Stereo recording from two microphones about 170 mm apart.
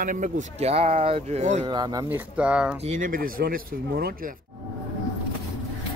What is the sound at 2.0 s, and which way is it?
Speech, 10° right (ahead or behind).